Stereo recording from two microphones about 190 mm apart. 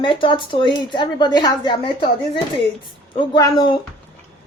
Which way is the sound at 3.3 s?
20° left (ahead or behind).